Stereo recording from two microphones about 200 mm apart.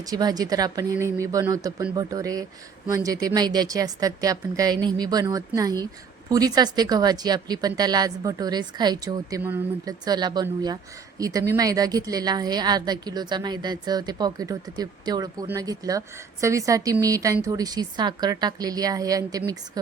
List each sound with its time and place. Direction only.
0.0 s a woman's voice: 20° right (ahead or behind)